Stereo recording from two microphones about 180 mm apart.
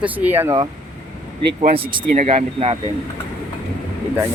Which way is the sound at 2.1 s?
40° right (ahead or behind).